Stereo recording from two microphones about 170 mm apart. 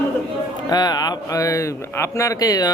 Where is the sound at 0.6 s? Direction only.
25° left (ahead or behind).